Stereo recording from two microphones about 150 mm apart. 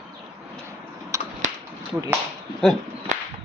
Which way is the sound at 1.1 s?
20° right (ahead or behind).